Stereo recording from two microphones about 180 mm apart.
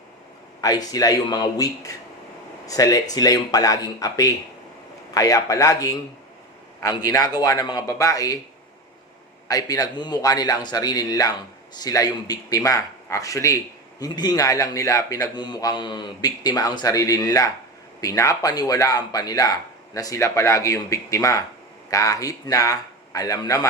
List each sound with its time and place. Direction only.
0.6 s speech: 20° left (ahead or behind)
9.5 s speech: 20° left (ahead or behind)